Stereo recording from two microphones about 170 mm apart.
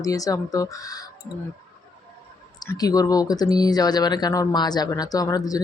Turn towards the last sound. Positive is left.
turn(degrees=20)  # may be behind; listen again after turning